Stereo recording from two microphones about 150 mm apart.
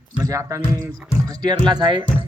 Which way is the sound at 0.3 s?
20° right (ahead or behind).